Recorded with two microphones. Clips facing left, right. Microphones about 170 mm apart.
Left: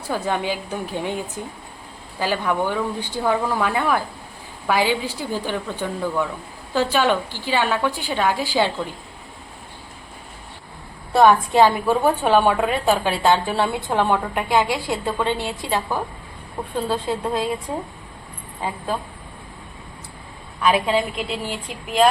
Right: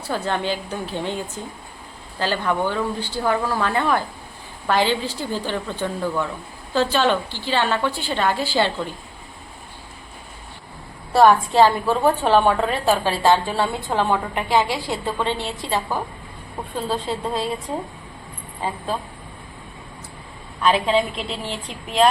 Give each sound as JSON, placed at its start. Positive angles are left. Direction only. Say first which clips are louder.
{"t": 0.1, "sound": "a woman's voice", "louder": "even", "side_deg": 10}
{"t": 11.1, "sound": "a woman's voice", "louder": "even", "side_deg": 0}
{"t": 11.5, "sound": "a woman's voice", "louder": "even", "side_deg": 15}
{"t": 13.6, "sound": "a woman's voice", "louder": "left 1 dB", "side_deg": 15}
{"t": 14.1, "sound": "a woman's voice", "louder": "even", "side_deg": 5}
{"t": 16.6, "sound": "a woman's voice", "louder": "left 2 dB", "side_deg": 0}
{"t": 20.6, "sound": "a woman's voice", "louder": "even", "side_deg": 5}